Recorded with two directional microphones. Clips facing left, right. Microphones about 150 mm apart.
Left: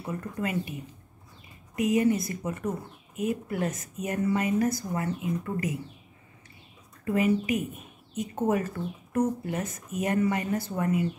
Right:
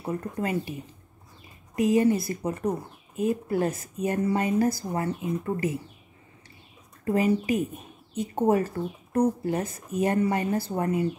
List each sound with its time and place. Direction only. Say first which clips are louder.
0.0 s speech: right 3 dB; 35° right (ahead or behind)
1.8 s speech: right 2 dB; 30° right (ahead or behind)
7.1 s speech: right 1 dB; 35° right (ahead or behind)